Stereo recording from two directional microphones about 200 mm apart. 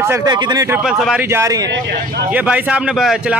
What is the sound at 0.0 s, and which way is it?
Speech, 15° right (ahead or behind).